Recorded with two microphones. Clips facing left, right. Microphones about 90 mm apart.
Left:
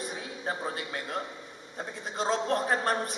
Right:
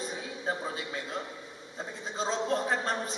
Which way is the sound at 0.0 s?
60° left (ahead or behind).